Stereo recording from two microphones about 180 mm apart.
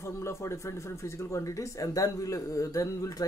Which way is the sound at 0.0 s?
15° left (ahead or behind).